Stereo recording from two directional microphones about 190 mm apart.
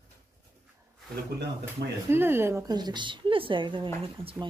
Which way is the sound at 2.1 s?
10° right (ahead or behind).